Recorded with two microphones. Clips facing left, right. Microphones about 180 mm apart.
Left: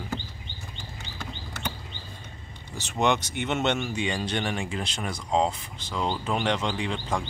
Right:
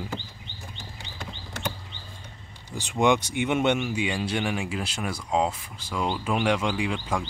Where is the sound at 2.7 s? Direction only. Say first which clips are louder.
Right 3 dB; 15° right (ahead or behind).